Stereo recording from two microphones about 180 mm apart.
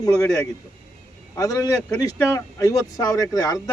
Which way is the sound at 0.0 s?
20° left (ahead or behind).